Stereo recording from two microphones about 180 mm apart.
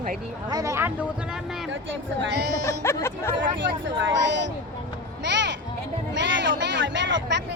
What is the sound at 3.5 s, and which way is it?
Speech, 90° right.